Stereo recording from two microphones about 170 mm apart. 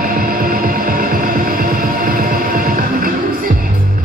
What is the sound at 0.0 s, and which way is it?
Hum, 55° right (ahead or behind).